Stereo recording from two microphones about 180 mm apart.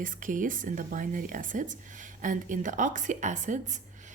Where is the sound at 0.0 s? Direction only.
45° right (ahead or behind).